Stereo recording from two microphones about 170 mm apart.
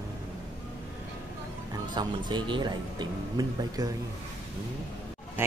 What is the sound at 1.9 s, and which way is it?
Speech, 25° right (ahead or behind).